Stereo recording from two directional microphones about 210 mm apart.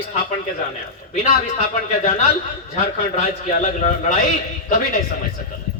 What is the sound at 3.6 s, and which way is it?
Speech, 30° left (ahead or behind).